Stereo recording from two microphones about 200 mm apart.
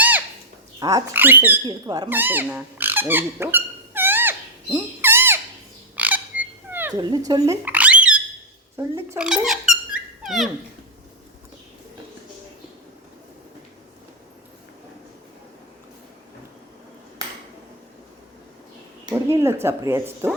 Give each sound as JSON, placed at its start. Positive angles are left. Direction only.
{"t": 0.8, "sound": "speech", "side_deg": -15}
{"t": 1.6, "sound": "speech", "side_deg": -20}
{"t": 2.0, "sound": "a sound", "side_deg": -10}
{"t": 6.0, "sound": "frog", "side_deg": -10}
{"t": 7.3, "sound": "a sound", "side_deg": -15}
{"t": 8.7, "sound": "speech", "side_deg": -15}
{"t": 19.1, "sound": "speech", "side_deg": -10}